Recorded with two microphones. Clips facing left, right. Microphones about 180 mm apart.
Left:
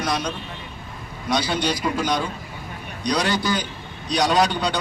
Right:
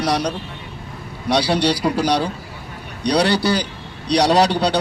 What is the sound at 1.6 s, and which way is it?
A man's voice, 35° right (ahead or behind).